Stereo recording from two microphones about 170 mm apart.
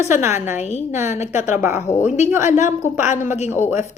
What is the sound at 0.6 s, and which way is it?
Speech, 40° left (ahead or behind).